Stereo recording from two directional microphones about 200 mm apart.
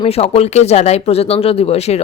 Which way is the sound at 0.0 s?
30° left (ahead or behind).